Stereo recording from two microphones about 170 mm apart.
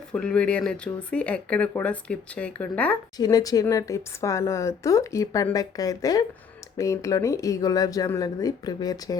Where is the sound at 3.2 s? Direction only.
20° left (ahead or behind).